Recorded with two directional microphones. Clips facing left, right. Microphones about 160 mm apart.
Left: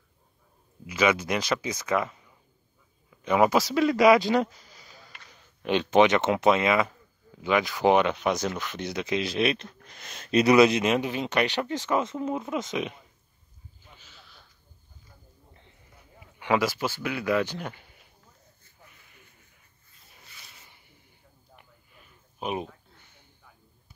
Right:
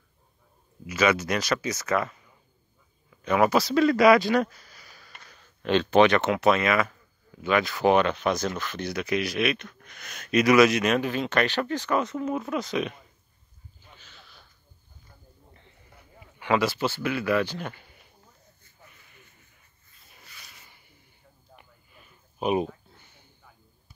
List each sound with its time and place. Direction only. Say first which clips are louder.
0.8 s a man's voice: right 1 dB; 15° left (ahead or behind)
3.3 s speech: even; 15° left (ahead or behind)
13.9 s a sound: right 1 dB; 5° left (ahead or behind)
16.3 s a man's voice: right 1 dB; 10° left (ahead or behind)
22.4 s speech: right 6 dB; 10° right (ahead or behind)